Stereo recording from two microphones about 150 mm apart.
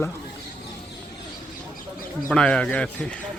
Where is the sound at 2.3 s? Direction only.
5° left (ahead or behind).